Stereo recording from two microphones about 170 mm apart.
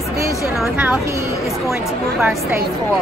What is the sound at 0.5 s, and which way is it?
Speech, 10° right (ahead or behind).